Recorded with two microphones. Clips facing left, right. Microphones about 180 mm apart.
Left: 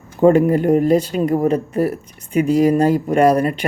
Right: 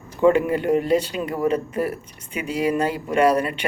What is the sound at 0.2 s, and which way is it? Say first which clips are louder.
Speech: left 5 dB; 40° left (ahead or behind).